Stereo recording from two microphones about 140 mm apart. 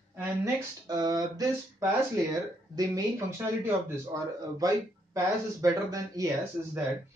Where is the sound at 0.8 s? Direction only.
30° right (ahead or behind).